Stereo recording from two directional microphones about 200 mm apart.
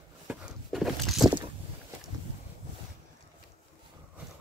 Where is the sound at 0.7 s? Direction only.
Centre (ahead or behind).